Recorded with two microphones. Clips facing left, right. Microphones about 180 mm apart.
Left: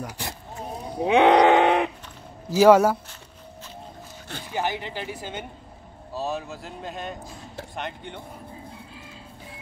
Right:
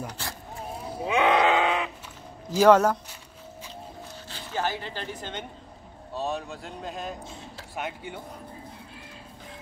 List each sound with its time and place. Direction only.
0.0 s vehicle: 15° left (ahead or behind)
1.0 s a sound: 65° left (ahead or behind)
2.5 s speech: 10° left (ahead or behind)
4.5 s speech: 15° left (ahead or behind); by 8.2 s 5° right (ahead or behind)